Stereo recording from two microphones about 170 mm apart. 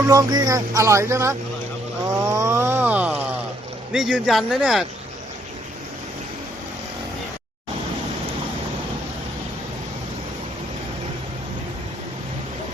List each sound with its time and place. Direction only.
0.1 s speech: 20° right (ahead or behind)
2.0 s a sound: 20° right (ahead or behind)
3.9 s speech: centre (ahead or behind)